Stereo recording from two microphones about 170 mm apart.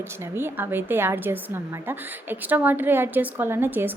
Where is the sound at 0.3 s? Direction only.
10° right (ahead or behind).